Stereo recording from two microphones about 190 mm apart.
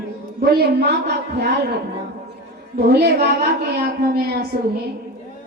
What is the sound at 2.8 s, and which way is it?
A woman's voice, 55° right (ahead or behind).